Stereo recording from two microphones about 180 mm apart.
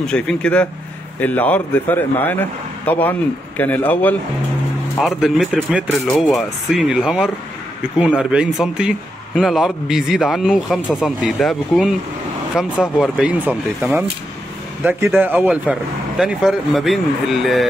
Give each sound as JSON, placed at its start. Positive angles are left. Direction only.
{"t": 0.0, "sound": "a man's voice", "side_deg": 5}
{"t": 5.0, "sound": "a man's voice", "side_deg": 0}